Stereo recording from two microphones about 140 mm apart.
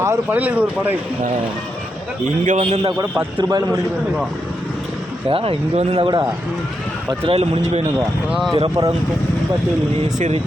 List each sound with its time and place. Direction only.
0.0 s speech: 15° right (ahead or behind)
2.4 s a man's voice: 55° right (ahead or behind)
3.3 s a man's voice: 30° right (ahead or behind)
5.3 s speech: 40° right (ahead or behind)
7.3 s speech: 45° right (ahead or behind)
8.3 s speech: centre (ahead or behind)
8.5 s speech: 40° right (ahead or behind)
10.2 s a man's voice: 55° right (ahead or behind)